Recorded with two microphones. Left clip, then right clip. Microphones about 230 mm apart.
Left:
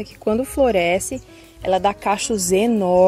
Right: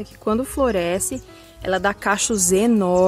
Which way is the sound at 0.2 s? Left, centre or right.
Centre.